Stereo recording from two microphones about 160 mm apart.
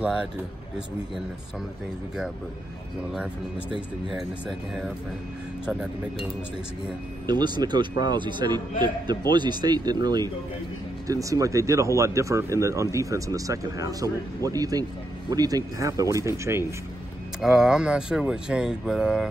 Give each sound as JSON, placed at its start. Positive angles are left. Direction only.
{"t": 0.0, "sound": "speech", "side_deg": -5}
{"t": 3.1, "sound": "speech", "side_deg": -5}
{"t": 7.2, "sound": "speech", "side_deg": -25}
{"t": 17.4, "sound": "speech", "side_deg": 0}